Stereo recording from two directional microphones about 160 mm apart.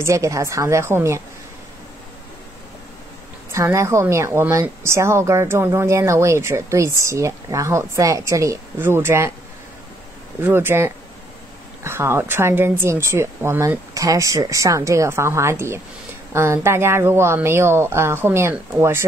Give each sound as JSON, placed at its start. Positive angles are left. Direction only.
{"t": 0.0, "sound": "a woman's voice", "side_deg": -20}
{"t": 3.5, "sound": "a woman's voice", "side_deg": -20}
{"t": 10.4, "sound": "a woman's voice", "side_deg": -15}